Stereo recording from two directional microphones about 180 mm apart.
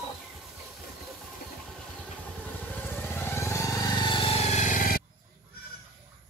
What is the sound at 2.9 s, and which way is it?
Vehicle, 15° left (ahead or behind).